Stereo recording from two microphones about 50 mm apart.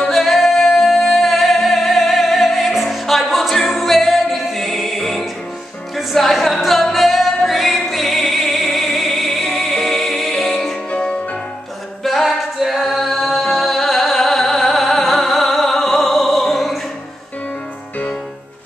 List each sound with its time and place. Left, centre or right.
0.1 s music: centre
10.9 s music: centre
12.0 s singing: centre